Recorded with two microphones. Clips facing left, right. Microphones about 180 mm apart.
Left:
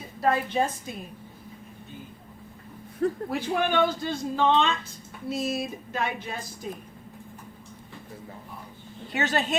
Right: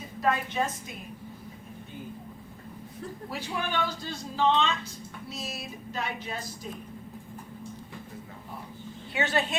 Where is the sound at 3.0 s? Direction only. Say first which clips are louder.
Left 11 dB; 55° left (ahead or behind).